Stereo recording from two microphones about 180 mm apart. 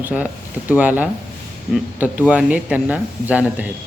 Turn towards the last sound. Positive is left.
turn(degrees=-10)  # may be behind; listen again after turning